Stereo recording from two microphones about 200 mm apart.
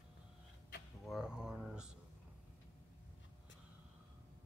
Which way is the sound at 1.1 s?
5° right (ahead or behind).